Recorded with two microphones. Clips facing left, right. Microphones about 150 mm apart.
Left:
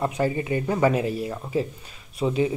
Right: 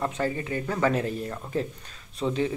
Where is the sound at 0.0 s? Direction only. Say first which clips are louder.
Left 4 dB; 15° left (ahead or behind).